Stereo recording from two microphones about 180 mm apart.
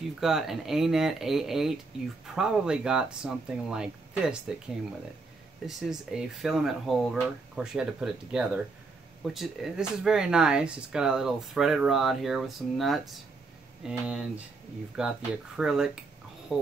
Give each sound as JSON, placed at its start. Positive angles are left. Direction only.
{"t": 0.2, "sound": "speech", "side_deg": 0}
{"t": 5.7, "sound": "speech", "side_deg": 0}